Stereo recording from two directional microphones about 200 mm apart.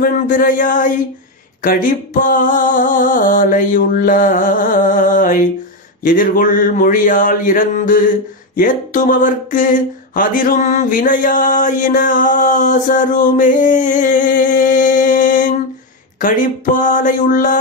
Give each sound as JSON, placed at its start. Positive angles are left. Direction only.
{"t": 0.0, "sound": "a man's voice", "side_deg": 45}